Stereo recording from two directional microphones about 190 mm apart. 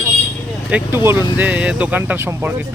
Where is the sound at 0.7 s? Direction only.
10° right (ahead or behind).